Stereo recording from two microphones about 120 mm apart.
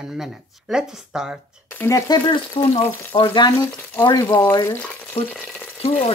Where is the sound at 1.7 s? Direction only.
15° left (ahead or behind).